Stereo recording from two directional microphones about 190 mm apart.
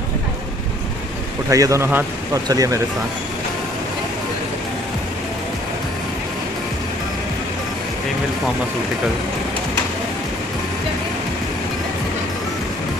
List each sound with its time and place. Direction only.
1.5 s speech: 15° right (ahead or behind)